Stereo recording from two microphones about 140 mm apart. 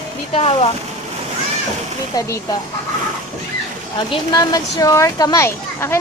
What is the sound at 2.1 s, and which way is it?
Speech, 25° left (ahead or behind).